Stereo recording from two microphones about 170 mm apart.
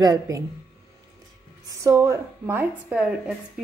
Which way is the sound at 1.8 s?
15° right (ahead or behind).